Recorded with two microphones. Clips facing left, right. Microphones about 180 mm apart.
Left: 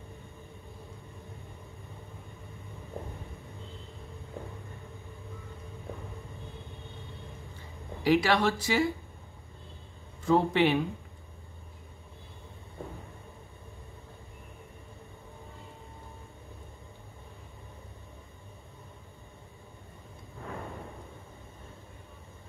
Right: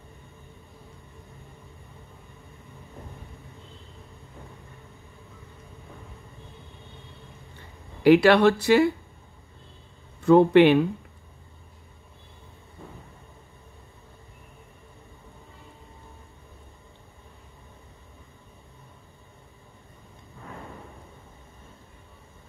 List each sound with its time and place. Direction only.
8.0 s speech: 65° right (ahead or behind)
10.2 s speech: 65° right (ahead or behind)